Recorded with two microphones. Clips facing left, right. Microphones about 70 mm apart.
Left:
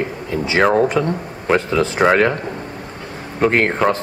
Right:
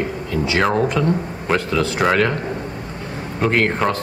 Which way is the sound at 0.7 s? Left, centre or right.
Left.